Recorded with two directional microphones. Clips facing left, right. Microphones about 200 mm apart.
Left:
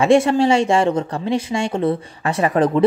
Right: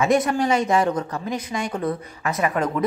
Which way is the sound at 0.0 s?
25° left (ahead or behind).